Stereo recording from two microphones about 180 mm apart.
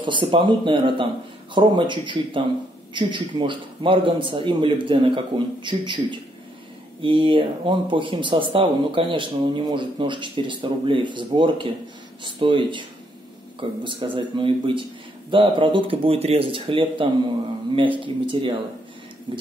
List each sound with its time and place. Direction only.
0.0 s speech: 25° right (ahead or behind)